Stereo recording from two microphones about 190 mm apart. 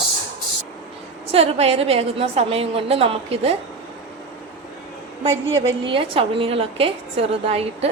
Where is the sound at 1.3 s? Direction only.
30° right (ahead or behind).